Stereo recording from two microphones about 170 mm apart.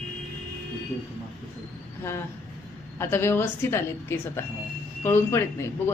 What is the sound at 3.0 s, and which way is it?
A woman's voice, 15° left (ahead or behind).